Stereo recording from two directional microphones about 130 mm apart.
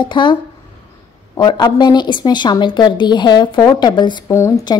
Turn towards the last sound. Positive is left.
turn(degrees=20)  # may be behind; listen again after turning